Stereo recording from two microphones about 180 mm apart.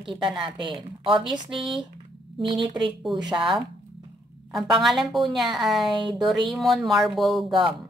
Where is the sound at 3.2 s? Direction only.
25° right (ahead or behind).